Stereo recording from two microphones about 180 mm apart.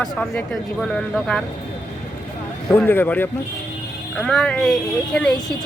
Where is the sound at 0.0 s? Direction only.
5° left (ahead or behind).